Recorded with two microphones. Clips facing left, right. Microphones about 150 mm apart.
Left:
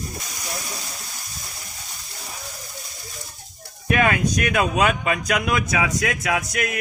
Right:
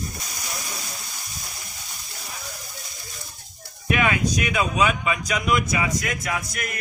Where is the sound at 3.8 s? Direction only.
45° left (ahead or behind); by 6.7 s 75° left (ahead or behind).